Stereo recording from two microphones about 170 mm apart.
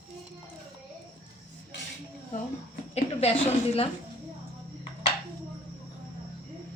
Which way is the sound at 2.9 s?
40° left (ahead or behind).